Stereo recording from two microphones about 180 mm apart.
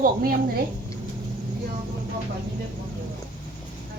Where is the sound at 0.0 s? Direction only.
50° right (ahead or behind).